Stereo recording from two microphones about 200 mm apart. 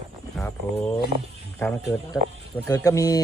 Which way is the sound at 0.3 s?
5° left (ahead or behind).